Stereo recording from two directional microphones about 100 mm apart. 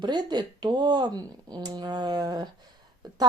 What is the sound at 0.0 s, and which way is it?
Speech, 50° right (ahead or behind).